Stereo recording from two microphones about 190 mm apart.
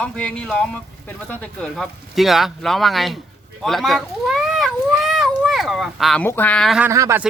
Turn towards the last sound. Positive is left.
turn(degrees=-15)  # may be behind; listen again after turning